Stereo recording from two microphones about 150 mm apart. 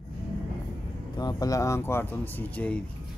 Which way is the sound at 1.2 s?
25° left (ahead or behind).